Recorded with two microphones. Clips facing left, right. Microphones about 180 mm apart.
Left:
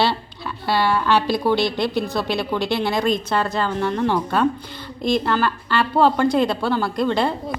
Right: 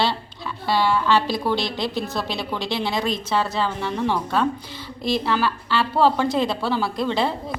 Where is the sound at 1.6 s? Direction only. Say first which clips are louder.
Left 5 dB; 60° left (ahead or behind).